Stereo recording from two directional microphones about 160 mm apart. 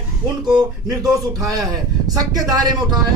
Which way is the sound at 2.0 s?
25° right (ahead or behind).